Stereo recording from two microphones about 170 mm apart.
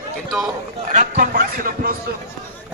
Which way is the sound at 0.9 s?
50° right (ahead or behind).